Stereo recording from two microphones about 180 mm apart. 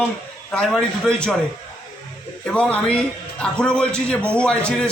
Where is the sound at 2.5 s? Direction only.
5° left (ahead or behind).